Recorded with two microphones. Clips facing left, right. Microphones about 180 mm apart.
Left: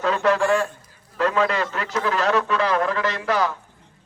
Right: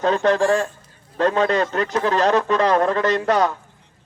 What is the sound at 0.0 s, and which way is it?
A man's voice, 35° right (ahead or behind).